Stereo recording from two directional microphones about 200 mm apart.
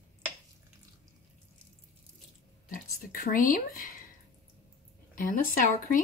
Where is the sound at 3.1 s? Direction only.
45° left (ahead or behind).